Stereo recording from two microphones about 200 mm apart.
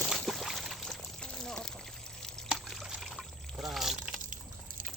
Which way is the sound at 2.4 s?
Centre (ahead or behind).